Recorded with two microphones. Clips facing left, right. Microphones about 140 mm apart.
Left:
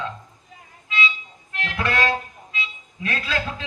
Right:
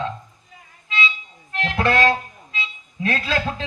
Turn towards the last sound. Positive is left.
turn(degrees=-30)  # may be behind; listen again after turning